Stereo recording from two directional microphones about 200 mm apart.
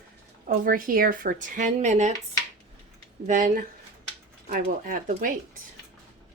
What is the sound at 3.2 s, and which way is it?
Speech, 40° right (ahead or behind).